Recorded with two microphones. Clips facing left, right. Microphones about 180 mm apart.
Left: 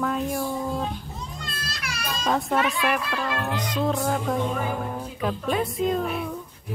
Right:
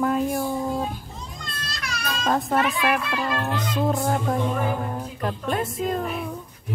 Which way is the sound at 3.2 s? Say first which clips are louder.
Right 2 dB; 20° right (ahead or behind).